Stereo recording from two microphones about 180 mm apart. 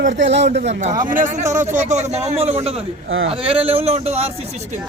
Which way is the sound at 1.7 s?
40° right (ahead or behind).